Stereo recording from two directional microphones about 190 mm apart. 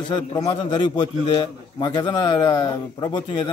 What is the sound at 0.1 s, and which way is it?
A man's voice, 20° left (ahead or behind).